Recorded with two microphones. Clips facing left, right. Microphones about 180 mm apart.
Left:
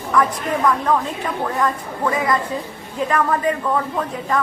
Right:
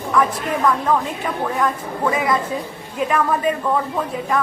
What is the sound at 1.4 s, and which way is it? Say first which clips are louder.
A man's voice: even; centre (ahead or behind).